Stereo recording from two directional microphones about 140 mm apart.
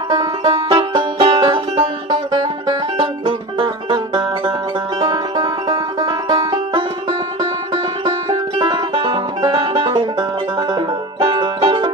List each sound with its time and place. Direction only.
0.4 s music: 40° right (ahead or behind)